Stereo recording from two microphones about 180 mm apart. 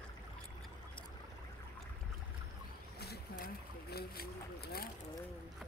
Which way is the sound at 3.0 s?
60° left (ahead or behind).